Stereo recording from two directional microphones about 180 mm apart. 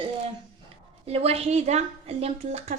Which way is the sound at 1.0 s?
35° right (ahead or behind).